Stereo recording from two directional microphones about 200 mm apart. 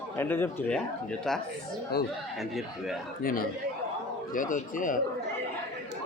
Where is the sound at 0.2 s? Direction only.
10° left (ahead or behind).